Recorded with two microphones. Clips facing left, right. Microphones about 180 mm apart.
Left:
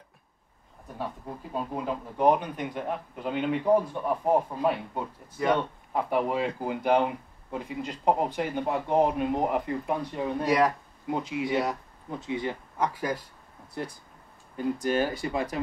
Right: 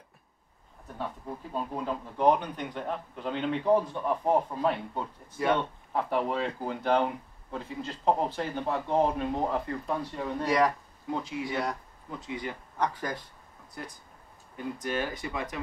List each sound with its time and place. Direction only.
1.5 s speech: 10° left (ahead or behind)
10.4 s speech: centre (ahead or behind)
11.1 s speech: 20° left (ahead or behind)
12.7 s speech: 5° left (ahead or behind)
13.8 s speech: 30° left (ahead or behind)